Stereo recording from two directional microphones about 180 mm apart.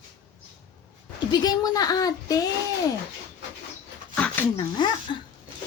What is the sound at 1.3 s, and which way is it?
A woman's voice, 20° left (ahead or behind).